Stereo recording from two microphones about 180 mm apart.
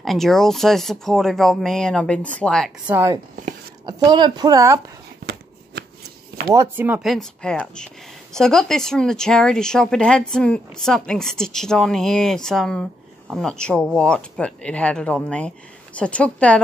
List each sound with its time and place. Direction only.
0.0 s speech: centre (ahead or behind)
2.9 s a woman's voice: 15° right (ahead or behind)
5.2 s shuffling cards: 65° right (ahead or behind)
6.5 s speech: 15° right (ahead or behind); by 16.6 s 5° left (ahead or behind)